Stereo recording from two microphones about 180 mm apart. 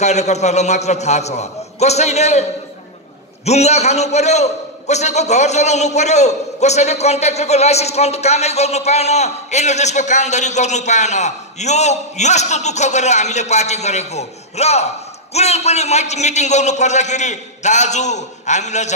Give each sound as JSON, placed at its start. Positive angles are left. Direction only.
{"t": 0.0, "sound": "a man's voice", "side_deg": 40}
{"t": 3.4, "sound": "a man's voice", "side_deg": 35}